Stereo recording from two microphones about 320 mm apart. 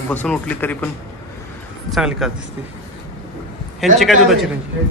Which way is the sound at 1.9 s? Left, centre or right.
Centre.